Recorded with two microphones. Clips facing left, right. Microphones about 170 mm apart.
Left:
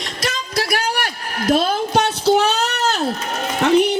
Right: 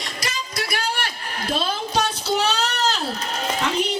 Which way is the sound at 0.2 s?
65° left (ahead or behind).